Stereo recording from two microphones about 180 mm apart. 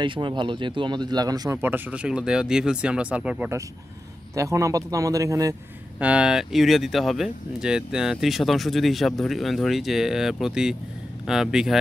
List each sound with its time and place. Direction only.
0.0 s speech: 25° right (ahead or behind)
5.9 s speech: 5° right (ahead or behind)